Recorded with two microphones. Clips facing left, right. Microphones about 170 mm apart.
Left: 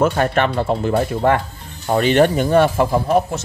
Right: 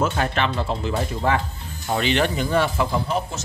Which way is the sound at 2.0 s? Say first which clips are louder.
Left 8 dB; 45° left (ahead or behind).